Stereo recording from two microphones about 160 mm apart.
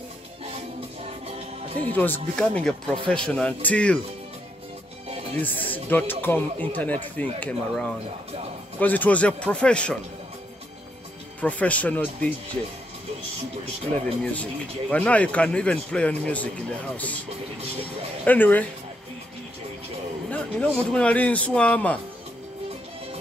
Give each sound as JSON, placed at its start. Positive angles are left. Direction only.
{"t": 1.7, "sound": "speech", "side_deg": -35}
{"t": 2.0, "sound": "speech", "side_deg": 10}
{"t": 5.0, "sound": "music", "side_deg": -40}
{"t": 5.4, "sound": "speech", "side_deg": 10}
{"t": 11.4, "sound": "speech", "side_deg": 10}
{"t": 14.2, "sound": "speech", "side_deg": 10}
{"t": 18.2, "sound": "speech", "side_deg": 10}
{"t": 20.2, "sound": "speech", "side_deg": 10}